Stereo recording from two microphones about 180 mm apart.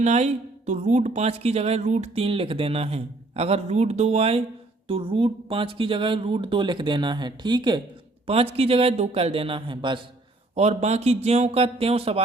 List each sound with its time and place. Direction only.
0.0 s speech: 40° right (ahead or behind)
10.5 s speech: 40° right (ahead or behind)